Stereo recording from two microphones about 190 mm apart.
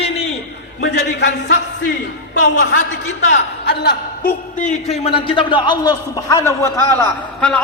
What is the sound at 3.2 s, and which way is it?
A man's voice, 60° left (ahead or behind).